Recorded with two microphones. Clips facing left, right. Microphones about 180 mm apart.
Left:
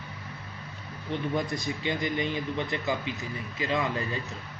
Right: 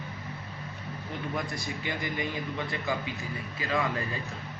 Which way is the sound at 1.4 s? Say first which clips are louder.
Left 4 dB; 20° left (ahead or behind).